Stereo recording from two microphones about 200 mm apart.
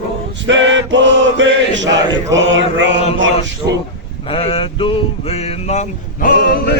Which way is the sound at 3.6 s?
15° right (ahead or behind).